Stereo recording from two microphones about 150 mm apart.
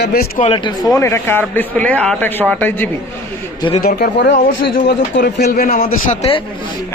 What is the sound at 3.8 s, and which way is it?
A man's voice, 90° left.